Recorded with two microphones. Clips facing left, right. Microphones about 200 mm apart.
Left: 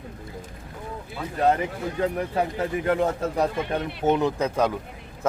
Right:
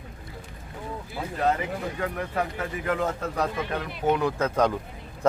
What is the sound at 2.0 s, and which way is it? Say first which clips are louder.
A man's voice: left 6 dB; 25° left (ahead or behind).